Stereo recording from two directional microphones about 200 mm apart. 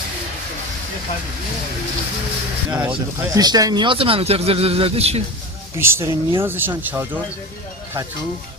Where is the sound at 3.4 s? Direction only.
20° right (ahead or behind).